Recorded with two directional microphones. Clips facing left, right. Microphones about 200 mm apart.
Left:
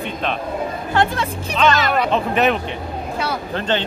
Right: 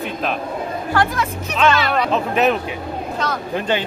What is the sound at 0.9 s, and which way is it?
Speech, 25° left (ahead or behind).